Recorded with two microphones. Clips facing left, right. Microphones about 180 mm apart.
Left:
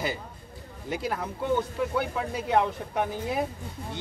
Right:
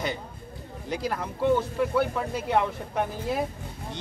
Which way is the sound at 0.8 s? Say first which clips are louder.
Right 1 dB; centre (ahead or behind).